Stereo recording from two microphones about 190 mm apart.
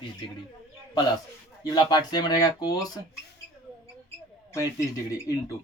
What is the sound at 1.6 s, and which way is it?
Speech, 20° left (ahead or behind).